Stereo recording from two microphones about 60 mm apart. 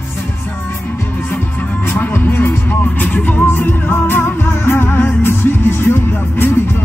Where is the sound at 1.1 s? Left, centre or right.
Left.